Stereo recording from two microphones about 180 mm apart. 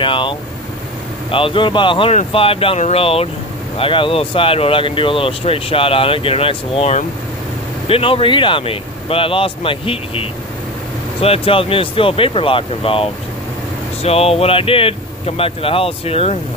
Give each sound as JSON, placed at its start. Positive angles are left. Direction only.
{"t": 0.0, "sound": "vehicle", "side_deg": 30}
{"t": 1.3, "sound": "speech", "side_deg": 30}